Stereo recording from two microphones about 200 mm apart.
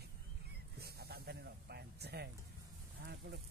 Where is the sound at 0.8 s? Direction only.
50° right (ahead or behind).